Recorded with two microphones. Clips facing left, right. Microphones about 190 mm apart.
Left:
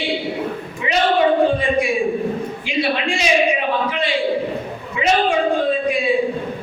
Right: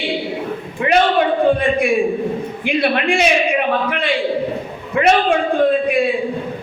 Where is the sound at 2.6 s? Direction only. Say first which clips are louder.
Right 5 dB; 55° right (ahead or behind).